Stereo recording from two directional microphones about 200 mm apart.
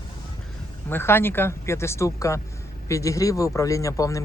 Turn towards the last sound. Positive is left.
turn(degrees=15)  # may be behind; listen again after turning